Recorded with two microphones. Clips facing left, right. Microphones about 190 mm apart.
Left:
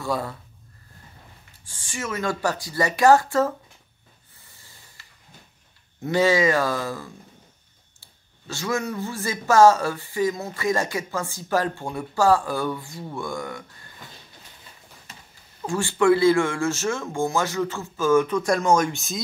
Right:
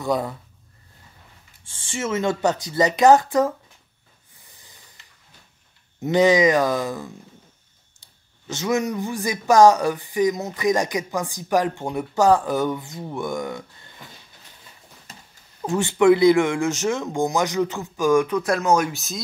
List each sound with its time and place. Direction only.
0.0 s speech: 20° right (ahead or behind)
1.6 s speech: 25° right (ahead or behind)
4.6 s snake: 20° right (ahead or behind)
5.9 s speech: 20° right (ahead or behind)
15.6 s speech: 20° right (ahead or behind); by 19.2 s centre (ahead or behind)